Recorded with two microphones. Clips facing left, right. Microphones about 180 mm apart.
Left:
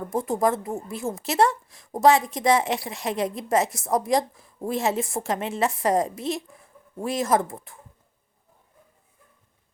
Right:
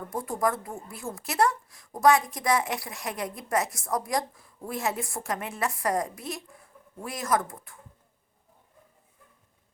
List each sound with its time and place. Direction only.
0.1 s speech: 25° left (ahead or behind)